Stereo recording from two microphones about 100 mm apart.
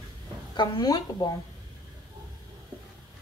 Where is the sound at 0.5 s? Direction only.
45° left (ahead or behind).